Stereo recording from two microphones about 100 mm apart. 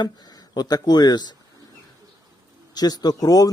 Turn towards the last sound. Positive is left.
turn(degrees=40)  # may be behind; listen again after turning